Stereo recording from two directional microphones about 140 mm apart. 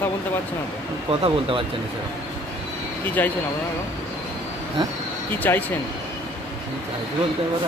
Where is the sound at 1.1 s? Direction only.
40° right (ahead or behind).